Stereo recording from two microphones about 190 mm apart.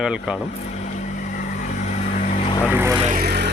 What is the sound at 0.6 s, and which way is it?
Vehicle, 40° left (ahead or behind).